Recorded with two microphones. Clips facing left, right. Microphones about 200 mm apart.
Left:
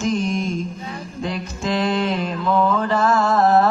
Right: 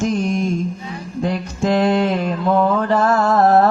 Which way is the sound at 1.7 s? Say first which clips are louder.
Right 4 dB; 45° right (ahead or behind).